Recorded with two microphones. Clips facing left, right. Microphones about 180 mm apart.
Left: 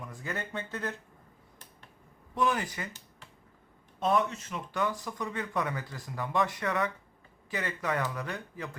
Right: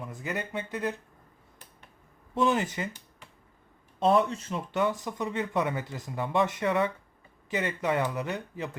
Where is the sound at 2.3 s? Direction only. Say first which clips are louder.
Right 4 dB; 25° right (ahead or behind).